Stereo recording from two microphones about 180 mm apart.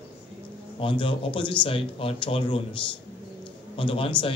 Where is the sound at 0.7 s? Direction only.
30° left (ahead or behind).